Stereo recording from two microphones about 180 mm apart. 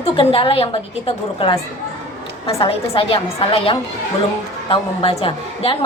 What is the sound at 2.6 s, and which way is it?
A woman's voice, 30° left (ahead or behind).